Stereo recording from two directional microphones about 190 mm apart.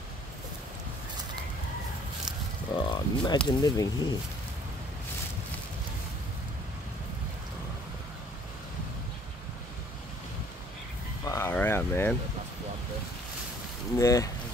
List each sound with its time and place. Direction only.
2.7 s speech: 25° left (ahead or behind)
11.2 s a sound: 15° left (ahead or behind)
13.9 s speech: 15° left (ahead or behind)